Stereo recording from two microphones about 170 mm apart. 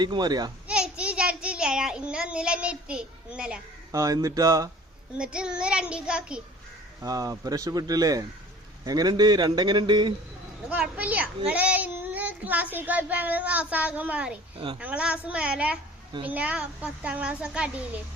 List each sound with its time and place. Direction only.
0.0 s a man's voice: 25° right (ahead or behind)
0.7 s a child's voice: 5° right (ahead or behind)
3.9 s a man's voice: 20° right (ahead or behind)
5.1 s child singing: 5° right (ahead or behind)
7.0 s a man's voice: 20° right (ahead or behind)
10.7 s a child's voice: 10° right (ahead or behind)
14.5 s a woman's voice: 30° right (ahead or behind)
14.8 s a child's voice: 10° right (ahead or behind)